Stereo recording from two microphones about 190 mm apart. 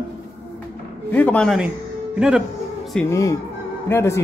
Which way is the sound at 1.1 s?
5° left (ahead or behind).